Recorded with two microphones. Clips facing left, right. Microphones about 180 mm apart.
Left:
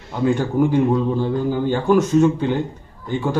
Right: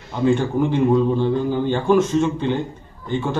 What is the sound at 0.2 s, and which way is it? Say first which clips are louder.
Speech: even; 10° left (ahead or behind).